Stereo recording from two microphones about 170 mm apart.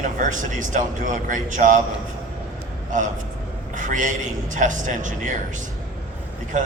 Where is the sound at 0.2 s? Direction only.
50° right (ahead or behind).